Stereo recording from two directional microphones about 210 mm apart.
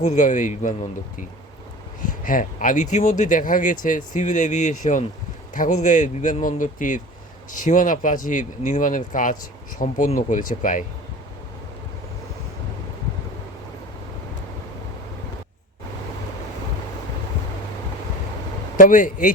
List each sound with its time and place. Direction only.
0.0 s speech: 35° left (ahead or behind)
18.8 s speech: 40° left (ahead or behind)